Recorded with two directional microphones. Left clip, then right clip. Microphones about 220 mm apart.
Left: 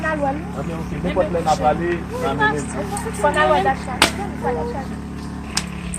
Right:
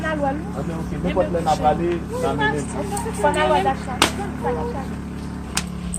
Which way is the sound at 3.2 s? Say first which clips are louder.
Left 2 dB; 10° left (ahead or behind).